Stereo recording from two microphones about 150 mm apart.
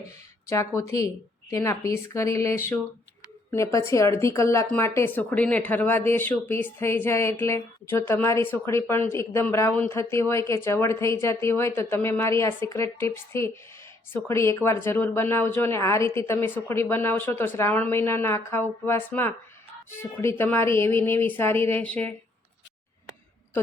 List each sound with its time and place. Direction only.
0.5 s a woman's voice: 20° left (ahead or behind)